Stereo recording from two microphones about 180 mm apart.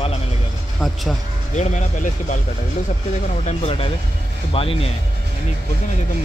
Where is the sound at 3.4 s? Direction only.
35° left (ahead or behind).